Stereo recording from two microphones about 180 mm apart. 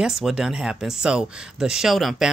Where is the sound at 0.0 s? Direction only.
Centre (ahead or behind).